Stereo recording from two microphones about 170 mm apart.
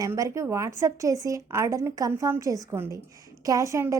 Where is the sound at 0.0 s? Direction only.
20° right (ahead or behind).